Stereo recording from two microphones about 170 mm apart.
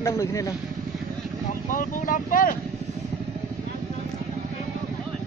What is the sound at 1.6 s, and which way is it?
Speech, 50° left (ahead or behind).